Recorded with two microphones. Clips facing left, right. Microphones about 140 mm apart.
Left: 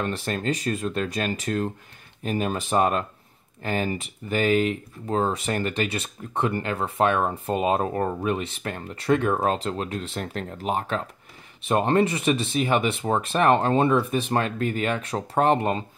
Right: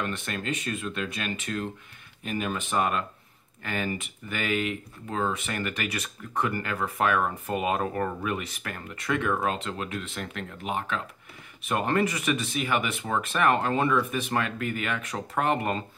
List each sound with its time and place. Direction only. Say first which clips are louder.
0.0 s speech: left 5 dB; 35° left (ahead or behind)